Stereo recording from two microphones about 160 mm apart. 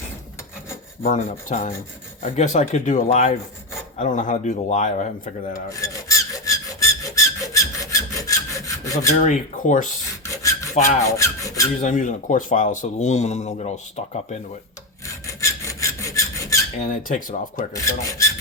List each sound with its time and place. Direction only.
1.5 s speech: 55° left (ahead or behind)
5.6 s filing: 20° left (ahead or behind)
9.2 s speech: 50° left (ahead or behind)
10.2 s filing: 20° left (ahead or behind)
11.0 s rub: 20° left (ahead or behind)
11.8 s speech: 50° left (ahead or behind)
15.3 s filing: 20° left (ahead or behind)
16.9 s speech: 55° left (ahead or behind)
17.7 s filing: 20° left (ahead or behind)